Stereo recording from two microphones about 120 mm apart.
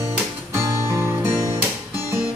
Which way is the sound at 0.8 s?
20° right (ahead or behind).